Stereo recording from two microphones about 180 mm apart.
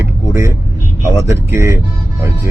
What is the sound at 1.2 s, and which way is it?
Speech, 15° right (ahead or behind).